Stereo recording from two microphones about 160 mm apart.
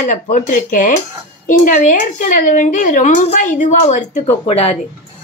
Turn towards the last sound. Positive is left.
turn(degrees=40)  # may be behind; listen again after turning